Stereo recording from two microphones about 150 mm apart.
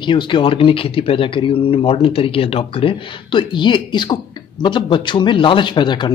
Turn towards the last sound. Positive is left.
turn(degrees=30)  # may be behind; listen again after turning